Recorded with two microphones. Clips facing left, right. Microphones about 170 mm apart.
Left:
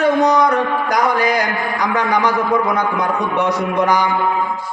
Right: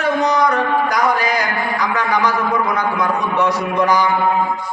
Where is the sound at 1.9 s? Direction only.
20° left (ahead or behind).